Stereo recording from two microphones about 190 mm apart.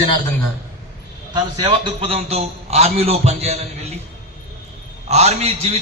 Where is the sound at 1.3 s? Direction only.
25° right (ahead or behind).